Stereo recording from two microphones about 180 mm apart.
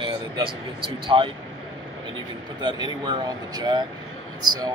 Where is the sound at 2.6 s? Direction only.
25° right (ahead or behind).